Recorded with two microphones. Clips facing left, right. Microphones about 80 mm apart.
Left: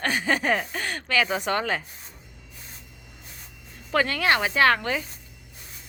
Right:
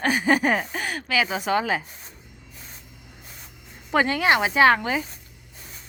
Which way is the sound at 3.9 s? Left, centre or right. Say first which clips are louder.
Right 2 dB; centre.